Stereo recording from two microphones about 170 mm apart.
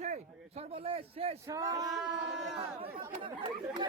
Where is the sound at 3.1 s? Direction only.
30° right (ahead or behind).